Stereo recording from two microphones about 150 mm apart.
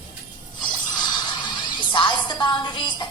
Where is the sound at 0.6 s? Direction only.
30° left (ahead or behind).